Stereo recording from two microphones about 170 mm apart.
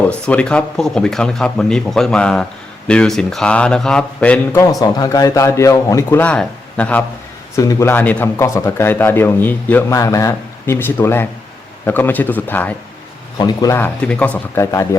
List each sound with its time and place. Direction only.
0.1 s speech: 5° left (ahead or behind)
4.8 s a man's voice: 20° left (ahead or behind)
7.5 s a man's voice: 20° left (ahead or behind)